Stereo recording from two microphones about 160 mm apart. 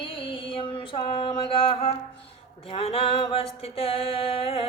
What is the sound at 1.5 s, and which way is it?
Music, 35° left (ahead or behind).